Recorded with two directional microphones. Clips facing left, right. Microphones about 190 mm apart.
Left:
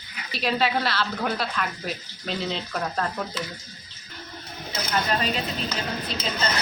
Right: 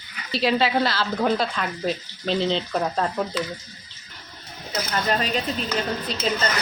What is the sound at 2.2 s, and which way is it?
Speech, 30° right (ahead or behind).